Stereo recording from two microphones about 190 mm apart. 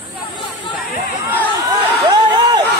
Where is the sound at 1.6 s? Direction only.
25° right (ahead or behind).